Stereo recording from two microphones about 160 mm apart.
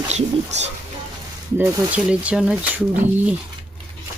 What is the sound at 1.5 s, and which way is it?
Speech, 20° right (ahead or behind).